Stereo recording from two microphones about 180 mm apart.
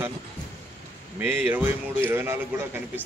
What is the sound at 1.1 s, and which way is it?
Speech, 10° right (ahead or behind).